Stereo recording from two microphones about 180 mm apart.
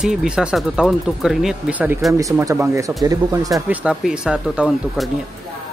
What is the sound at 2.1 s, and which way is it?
Speech, 20° right (ahead or behind).